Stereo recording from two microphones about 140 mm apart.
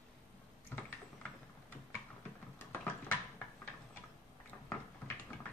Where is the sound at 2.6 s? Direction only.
15° left (ahead or behind).